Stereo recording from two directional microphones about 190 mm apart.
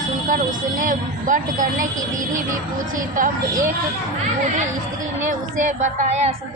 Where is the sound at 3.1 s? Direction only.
45° right (ahead or behind).